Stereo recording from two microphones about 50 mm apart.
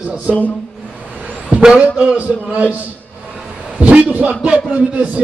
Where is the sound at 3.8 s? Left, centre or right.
Right.